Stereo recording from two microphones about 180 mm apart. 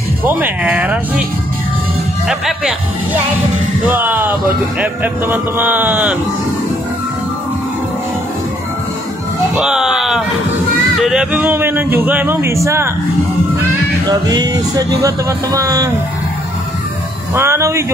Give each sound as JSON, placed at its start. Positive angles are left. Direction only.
{"t": 0.2, "sound": "speech", "side_deg": -10}
{"t": 2.2, "sound": "speech", "side_deg": 0}
{"t": 3.8, "sound": "speech", "side_deg": -10}
{"t": 9.6, "sound": "speech", "side_deg": -5}
{"t": 14.0, "sound": "music", "side_deg": -20}
{"t": 17.3, "sound": "speech", "side_deg": -15}